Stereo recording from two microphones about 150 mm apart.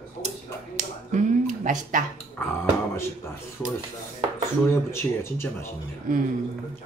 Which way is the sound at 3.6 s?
15° left (ahead or behind).